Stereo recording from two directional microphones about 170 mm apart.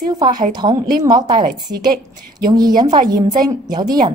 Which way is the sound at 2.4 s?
25° right (ahead or behind).